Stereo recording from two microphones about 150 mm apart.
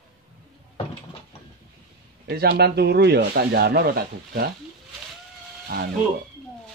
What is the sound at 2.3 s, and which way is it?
Speech, 90° right.